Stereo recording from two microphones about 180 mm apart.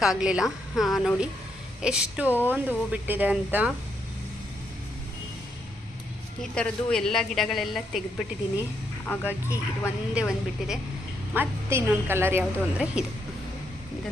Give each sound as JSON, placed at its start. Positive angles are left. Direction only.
{"t": 0.0, "sound": "a woman's voice", "side_deg": -5}
{"t": 6.4, "sound": "a woman's voice", "side_deg": 5}
{"t": 9.0, "sound": "speech", "side_deg": 15}
{"t": 10.2, "sound": "a woman's voice", "side_deg": -5}